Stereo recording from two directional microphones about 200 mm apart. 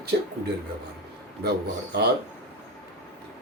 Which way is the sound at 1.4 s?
55° right (ahead or behind).